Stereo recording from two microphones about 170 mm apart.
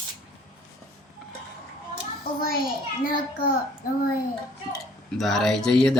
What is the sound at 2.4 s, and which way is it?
A child's voice, 60° left (ahead or behind).